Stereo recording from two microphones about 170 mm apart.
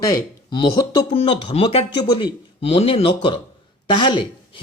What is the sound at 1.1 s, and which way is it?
Speech, 30° left (ahead or behind).